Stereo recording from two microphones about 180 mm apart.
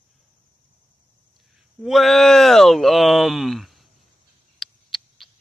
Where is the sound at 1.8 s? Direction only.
Centre (ahead or behind).